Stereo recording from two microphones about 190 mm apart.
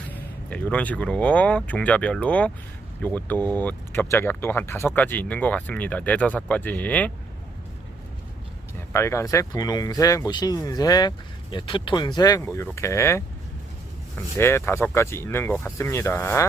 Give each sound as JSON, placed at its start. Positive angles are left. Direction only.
{"t": 0.1, "sound": "speech", "side_deg": 5}
{"t": 8.9, "sound": "speech", "side_deg": 15}
{"t": 14.3, "sound": "speech", "side_deg": 15}